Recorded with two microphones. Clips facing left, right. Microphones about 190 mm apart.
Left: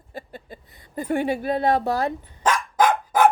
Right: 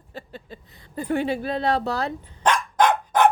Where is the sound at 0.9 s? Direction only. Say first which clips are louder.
Left 1 dB; 45° left (ahead or behind).